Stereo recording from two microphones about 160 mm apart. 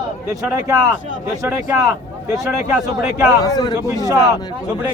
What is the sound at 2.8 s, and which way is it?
Speech, 20° right (ahead or behind).